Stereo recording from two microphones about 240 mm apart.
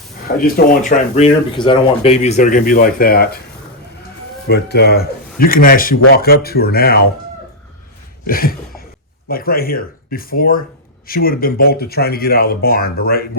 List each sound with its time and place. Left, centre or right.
0.4 s speech: left
4.4 s speech: left
8.3 s a sound: left
9.3 s speech: left